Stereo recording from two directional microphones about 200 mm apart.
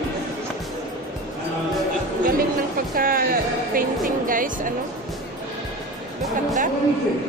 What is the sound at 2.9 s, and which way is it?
Music, 45° right (ahead or behind).